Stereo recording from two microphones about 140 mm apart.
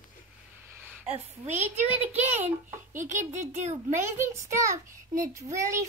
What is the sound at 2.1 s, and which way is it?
Speech, 15° right (ahead or behind).